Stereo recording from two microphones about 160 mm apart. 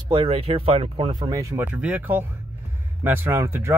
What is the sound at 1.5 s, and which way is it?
Speech, 10° right (ahead or behind).